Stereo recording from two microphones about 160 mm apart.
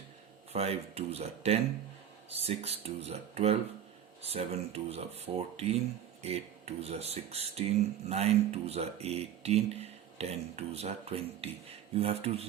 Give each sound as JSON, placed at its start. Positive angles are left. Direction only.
{"t": 0.5, "sound": "speech", "side_deg": -40}